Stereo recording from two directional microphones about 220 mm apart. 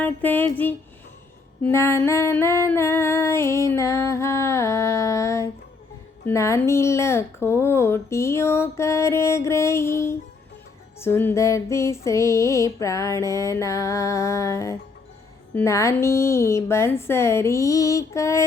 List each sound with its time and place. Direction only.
0.0 s speech: 10° left (ahead or behind)
1.6 s speech: 10° left (ahead or behind)